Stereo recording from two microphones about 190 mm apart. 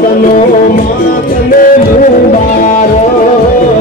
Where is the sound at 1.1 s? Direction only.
45° left (ahead or behind).